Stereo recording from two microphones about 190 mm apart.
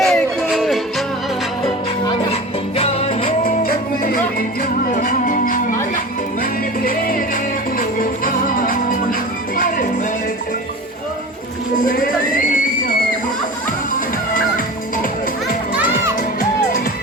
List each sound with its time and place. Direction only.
0.0 s music: centre (ahead or behind)
2.0 s music: 30° left (ahead or behind)
11.9 s music: 45° left (ahead or behind)